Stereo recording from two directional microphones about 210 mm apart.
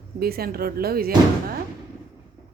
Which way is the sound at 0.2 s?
45° right (ahead or behind).